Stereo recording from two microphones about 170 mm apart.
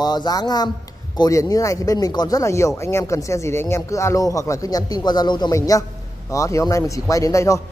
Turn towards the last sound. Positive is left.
turn(degrees=20)  # may be behind; listen again after turning